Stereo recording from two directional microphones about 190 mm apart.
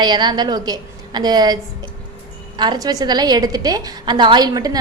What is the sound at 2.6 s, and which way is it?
A woman's voice, 20° right (ahead or behind).